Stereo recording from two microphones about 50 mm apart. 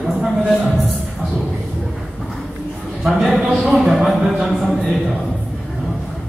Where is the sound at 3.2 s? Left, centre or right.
Centre.